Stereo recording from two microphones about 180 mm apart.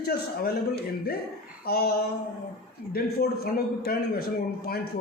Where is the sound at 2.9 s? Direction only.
60° left (ahead or behind).